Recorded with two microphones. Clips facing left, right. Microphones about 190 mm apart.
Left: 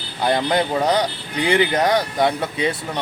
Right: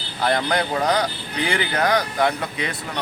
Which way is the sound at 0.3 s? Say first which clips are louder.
Left 3 dB; 20° left (ahead or behind).